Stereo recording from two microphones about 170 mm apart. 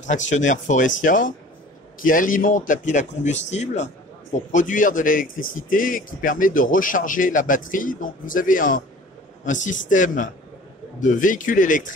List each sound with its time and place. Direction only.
0.0 s speech: 45° left (ahead or behind)